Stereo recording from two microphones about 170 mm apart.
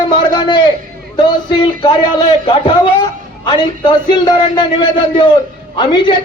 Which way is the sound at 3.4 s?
25° left (ahead or behind).